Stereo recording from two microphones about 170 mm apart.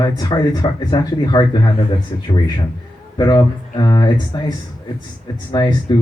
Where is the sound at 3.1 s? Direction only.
25° left (ahead or behind).